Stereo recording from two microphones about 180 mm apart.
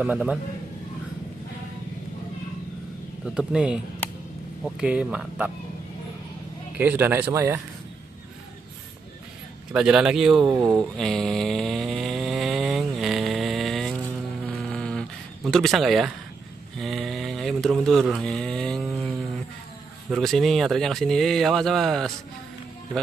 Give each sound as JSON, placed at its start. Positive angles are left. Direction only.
{"t": 0.0, "sound": "speech", "side_deg": -5}
{"t": 3.3, "sound": "speech", "side_deg": -5}
{"t": 6.8, "sound": "speech", "side_deg": -10}
{"t": 9.7, "sound": "speech", "side_deg": -5}
{"t": 11.0, "sound": "a sound", "side_deg": 5}
{"t": 20.1, "sound": "speech", "side_deg": 0}